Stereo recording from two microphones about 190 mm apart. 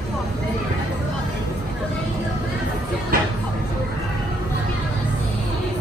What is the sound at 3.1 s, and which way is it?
Music, 50° right (ahead or behind).